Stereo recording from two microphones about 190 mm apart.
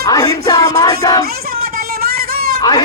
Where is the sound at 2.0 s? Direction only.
55° right (ahead or behind).